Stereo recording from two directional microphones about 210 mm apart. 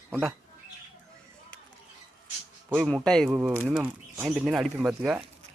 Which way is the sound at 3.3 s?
5° right (ahead or behind).